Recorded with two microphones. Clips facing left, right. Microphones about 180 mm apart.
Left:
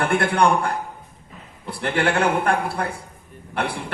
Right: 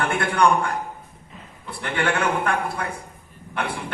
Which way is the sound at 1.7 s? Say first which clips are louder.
Left 3 dB; 35° left (ahead or behind).